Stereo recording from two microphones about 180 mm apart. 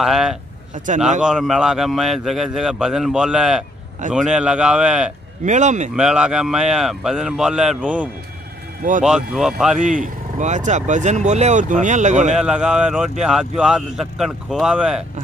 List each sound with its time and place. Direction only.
0.0 s a man's voice: centre (ahead or behind)
0.8 s speech: 40° right (ahead or behind)
1.2 s a man's voice: 5° right (ahead or behind)
5.4 s speech: 40° right (ahead or behind)
5.9 s a man's voice: 5° right (ahead or behind)
9.8 s speech: 45° right (ahead or behind)
12.4 s a man's voice: 5° right (ahead or behind)